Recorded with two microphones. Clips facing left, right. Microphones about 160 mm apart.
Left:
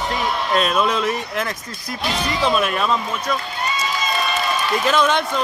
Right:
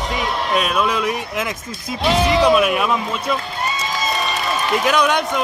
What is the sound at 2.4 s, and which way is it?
Speech, 10° right (ahead or behind).